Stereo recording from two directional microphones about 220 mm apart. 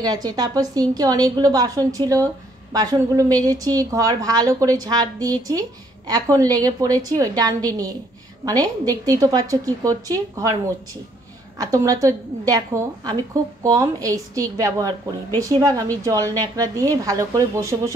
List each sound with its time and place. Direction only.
0.0 s a woman's voice: 15° right (ahead or behind)
11.5 s a woman's voice: 15° right (ahead or behind)